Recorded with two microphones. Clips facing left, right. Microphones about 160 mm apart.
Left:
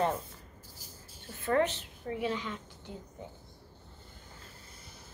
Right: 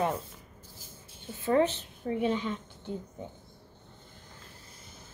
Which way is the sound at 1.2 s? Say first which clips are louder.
Right 3 dB; 20° right (ahead or behind).